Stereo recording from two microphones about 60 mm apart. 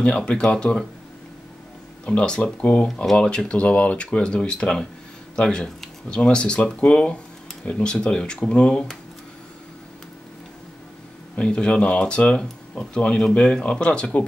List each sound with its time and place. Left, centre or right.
0.0 s speech: centre
2.0 s speech: centre
11.3 s speech: centre